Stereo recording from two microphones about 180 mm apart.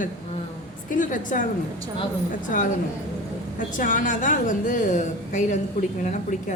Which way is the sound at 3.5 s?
45° left (ahead or behind).